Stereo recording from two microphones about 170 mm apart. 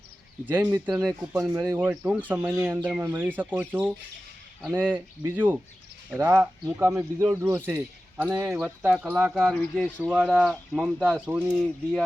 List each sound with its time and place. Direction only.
0.4 s speech: 10° right (ahead or behind)
1.0 s speech: centre (ahead or behind)
1.4 s speech: 20° right (ahead or behind)
11.5 s speech: centre (ahead or behind)